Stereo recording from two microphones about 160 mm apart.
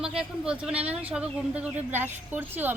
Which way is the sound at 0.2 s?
5° right (ahead or behind).